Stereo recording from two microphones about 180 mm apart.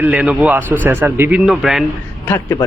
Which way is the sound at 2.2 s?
15° left (ahead or behind).